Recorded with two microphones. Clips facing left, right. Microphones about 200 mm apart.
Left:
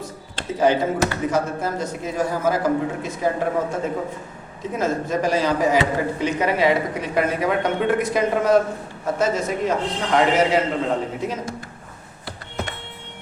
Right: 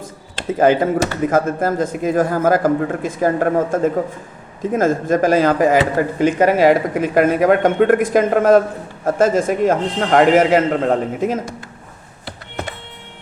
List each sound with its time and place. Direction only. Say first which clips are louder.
0.6 s a man's voice: right 4 dB; 55° right (ahead or behind)